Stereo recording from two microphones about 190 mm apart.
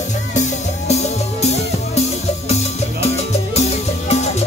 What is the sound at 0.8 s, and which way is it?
Music, 35° left (ahead or behind).